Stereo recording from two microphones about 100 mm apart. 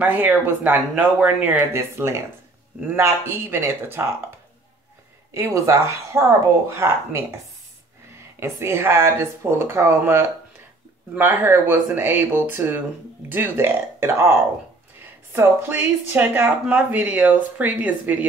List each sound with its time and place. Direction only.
0.0 s speech: 15° right (ahead or behind)
5.3 s speech: 30° right (ahead or behind)
8.4 s speech: 25° right (ahead or behind)